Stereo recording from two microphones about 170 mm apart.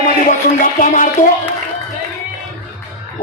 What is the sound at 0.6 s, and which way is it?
Speech, 50° left (ahead or behind).